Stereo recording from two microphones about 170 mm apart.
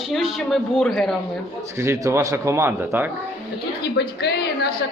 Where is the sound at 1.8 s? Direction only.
15° right (ahead or behind).